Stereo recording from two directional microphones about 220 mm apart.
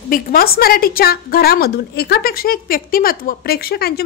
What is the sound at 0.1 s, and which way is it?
A woman's voice, 40° left (ahead or behind).